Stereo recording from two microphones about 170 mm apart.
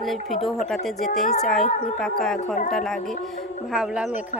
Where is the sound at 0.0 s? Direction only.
Centre (ahead or behind).